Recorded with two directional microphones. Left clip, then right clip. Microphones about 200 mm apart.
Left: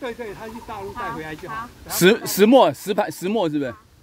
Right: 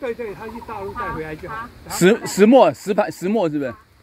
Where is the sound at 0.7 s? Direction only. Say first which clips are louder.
Right 2 dB; 30° left (ahead or behind).